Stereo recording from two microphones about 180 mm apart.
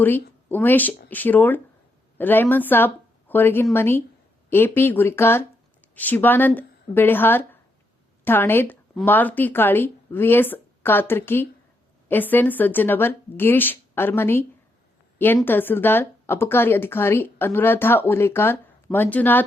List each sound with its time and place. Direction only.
0.0 s a woman's voice: 10° left (ahead or behind)
15.4 s speech: 10° left (ahead or behind)